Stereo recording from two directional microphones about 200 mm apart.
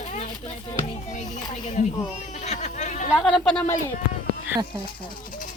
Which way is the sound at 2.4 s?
35° left (ahead or behind).